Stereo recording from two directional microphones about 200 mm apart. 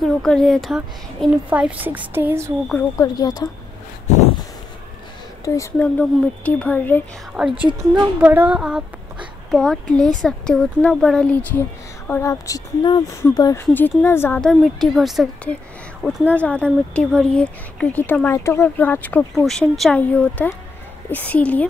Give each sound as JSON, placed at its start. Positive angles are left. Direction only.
{"t": 0.0, "sound": "a woman's voice", "side_deg": 0}
{"t": 3.0, "sound": "speech", "side_deg": 20}
{"t": 5.4, "sound": "speech", "side_deg": 10}
{"t": 7.3, "sound": "a woman's voice", "side_deg": -5}